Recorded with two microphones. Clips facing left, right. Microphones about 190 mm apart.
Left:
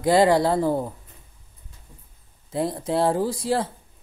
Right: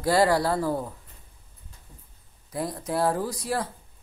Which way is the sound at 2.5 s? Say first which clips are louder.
Left 5 dB; 25° left (ahead or behind).